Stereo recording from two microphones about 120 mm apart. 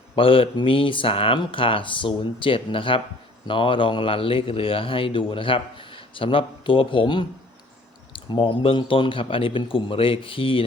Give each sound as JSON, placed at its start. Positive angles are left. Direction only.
{"t": 0.2, "sound": "speech", "side_deg": 50}